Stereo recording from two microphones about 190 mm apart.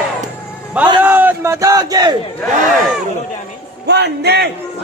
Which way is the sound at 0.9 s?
10° right (ahead or behind).